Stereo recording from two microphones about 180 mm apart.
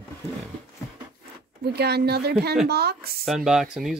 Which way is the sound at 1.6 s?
65° right (ahead or behind).